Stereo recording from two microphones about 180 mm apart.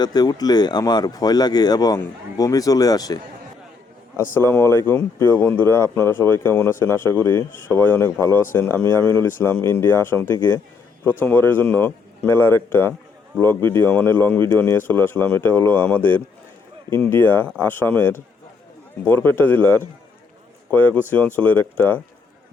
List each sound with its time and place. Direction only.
0.0 s speech: 20° left (ahead or behind)
4.4 s speech: 15° left (ahead or behind)